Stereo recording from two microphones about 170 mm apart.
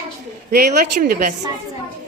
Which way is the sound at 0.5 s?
55° right (ahead or behind).